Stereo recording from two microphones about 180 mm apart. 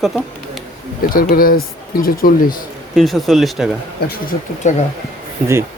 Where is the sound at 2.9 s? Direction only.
Centre (ahead or behind).